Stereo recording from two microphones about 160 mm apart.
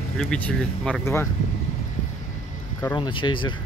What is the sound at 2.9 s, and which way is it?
Speech, 30° left (ahead or behind).